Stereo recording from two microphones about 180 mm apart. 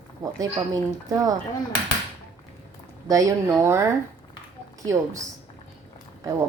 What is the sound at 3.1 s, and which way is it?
Speech, 15° right (ahead or behind).